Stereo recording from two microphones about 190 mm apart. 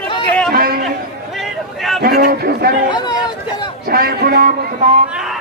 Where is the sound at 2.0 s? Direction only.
55° right (ahead or behind).